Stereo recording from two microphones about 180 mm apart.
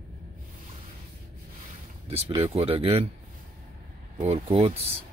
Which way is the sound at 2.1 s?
35° right (ahead or behind).